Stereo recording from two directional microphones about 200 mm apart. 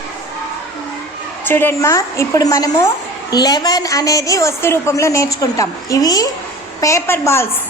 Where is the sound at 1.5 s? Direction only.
10° left (ahead or behind).